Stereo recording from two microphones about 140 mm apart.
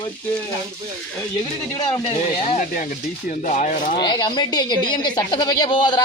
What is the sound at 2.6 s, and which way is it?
Speech, 70° left (ahead or behind).